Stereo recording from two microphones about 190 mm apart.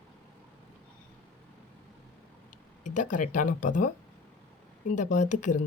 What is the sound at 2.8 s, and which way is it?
Speech, 40° left (ahead or behind).